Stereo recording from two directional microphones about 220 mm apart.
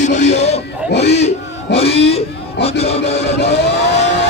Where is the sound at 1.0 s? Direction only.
30° left (ahead or behind).